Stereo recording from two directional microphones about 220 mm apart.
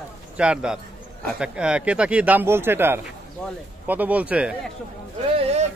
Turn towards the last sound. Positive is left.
turn(degrees=-25)  # may be behind; listen again after turning